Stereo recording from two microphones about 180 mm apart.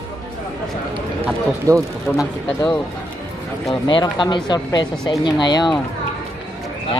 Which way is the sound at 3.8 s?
25° left (ahead or behind).